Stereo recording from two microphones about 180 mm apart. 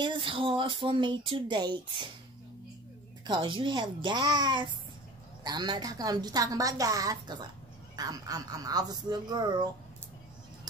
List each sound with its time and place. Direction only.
0.0 s music: 30° right (ahead or behind)
3.3 s music: 25° right (ahead or behind)